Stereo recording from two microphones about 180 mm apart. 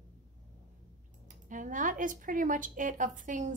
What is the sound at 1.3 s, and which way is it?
Speech, 45° right (ahead or behind).